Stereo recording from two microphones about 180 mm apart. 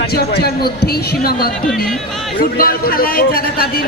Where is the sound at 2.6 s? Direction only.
55° left (ahead or behind).